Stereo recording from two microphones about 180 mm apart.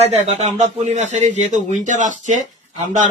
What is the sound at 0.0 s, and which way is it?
Speech, 35° right (ahead or behind).